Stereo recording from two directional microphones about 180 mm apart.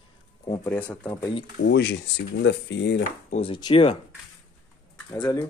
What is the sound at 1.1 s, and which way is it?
Speech, 25° left (ahead or behind).